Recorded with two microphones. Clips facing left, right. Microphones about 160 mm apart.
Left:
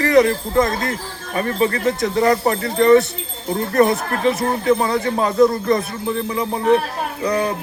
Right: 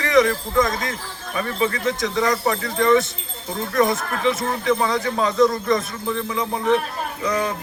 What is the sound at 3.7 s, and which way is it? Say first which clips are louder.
Speech: left 3 dB; 60° left (ahead or behind).